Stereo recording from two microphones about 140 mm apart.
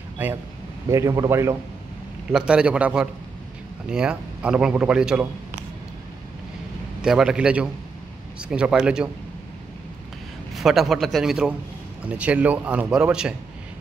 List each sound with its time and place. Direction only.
0.2 s a man's voice: 15° right (ahead or behind)
2.3 s speech: 5° right (ahead or behind)
7.0 s speech: 5° right (ahead or behind)
10.5 s a man's voice: centre (ahead or behind)